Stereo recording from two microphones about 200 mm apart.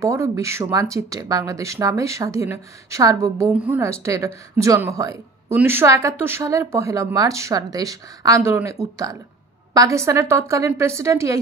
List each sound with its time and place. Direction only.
0.0 s speech: 15° right (ahead or behind)